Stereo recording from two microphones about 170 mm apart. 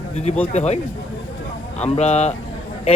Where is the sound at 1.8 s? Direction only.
40° left (ahead or behind).